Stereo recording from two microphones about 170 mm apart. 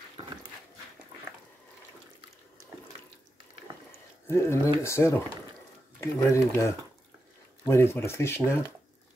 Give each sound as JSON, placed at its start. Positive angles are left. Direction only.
{"t": 4.3, "sound": "speech", "side_deg": 15}